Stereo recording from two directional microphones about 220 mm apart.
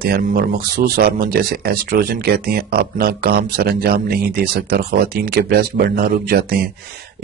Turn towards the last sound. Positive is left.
turn(degrees=-45)  # may be behind; listen again after turning